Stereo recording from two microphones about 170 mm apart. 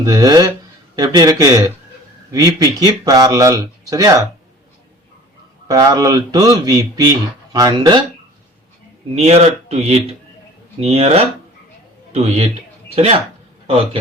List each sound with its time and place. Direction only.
0.0 s speech: 20° right (ahead or behind)
5.6 s speech: 20° right (ahead or behind)
9.1 s speech: 40° right (ahead or behind)